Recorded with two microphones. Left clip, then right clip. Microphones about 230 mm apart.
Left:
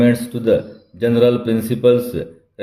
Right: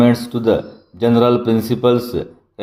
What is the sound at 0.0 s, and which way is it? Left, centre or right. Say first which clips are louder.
Speech: right 2 dB; centre.